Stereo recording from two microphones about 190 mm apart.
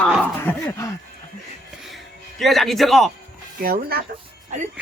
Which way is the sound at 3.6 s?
50° right (ahead or behind).